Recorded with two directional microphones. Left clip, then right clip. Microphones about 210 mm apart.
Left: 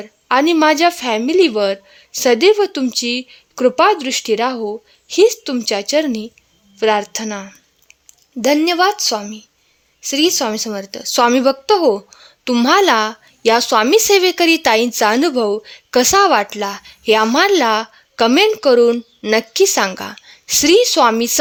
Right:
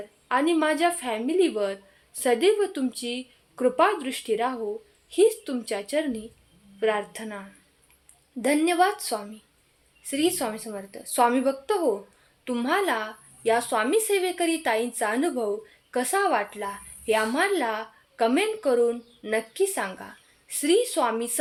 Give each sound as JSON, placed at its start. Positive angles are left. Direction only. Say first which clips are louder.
{"t": 0.3, "sound": "a woman's voice", "louder": "left 11 dB", "side_deg": 45}